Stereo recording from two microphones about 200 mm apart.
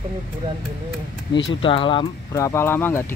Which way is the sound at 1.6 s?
25° left (ahead or behind).